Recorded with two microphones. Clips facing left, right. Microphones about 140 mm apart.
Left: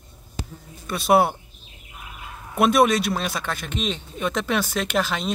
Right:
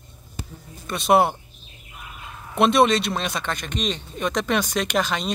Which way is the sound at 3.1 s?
5° left (ahead or behind).